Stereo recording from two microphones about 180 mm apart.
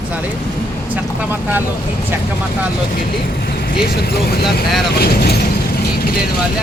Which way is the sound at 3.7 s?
60° left (ahead or behind).